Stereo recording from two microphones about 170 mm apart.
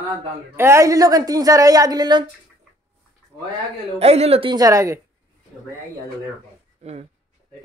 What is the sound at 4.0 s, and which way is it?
A woman's voice, 35° right (ahead or behind).